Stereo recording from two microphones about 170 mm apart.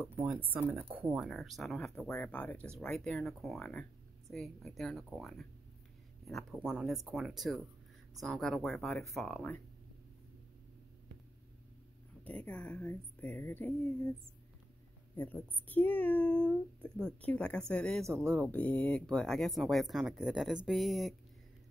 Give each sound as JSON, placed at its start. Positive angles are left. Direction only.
{"t": 0.1, "sound": "speech", "side_deg": -10}
{"t": 12.3, "sound": "speech", "side_deg": 10}
{"t": 15.1, "sound": "speech", "side_deg": 10}
{"t": 18.0, "sound": "speech", "side_deg": -15}
{"t": 18.3, "sound": "speech", "side_deg": 10}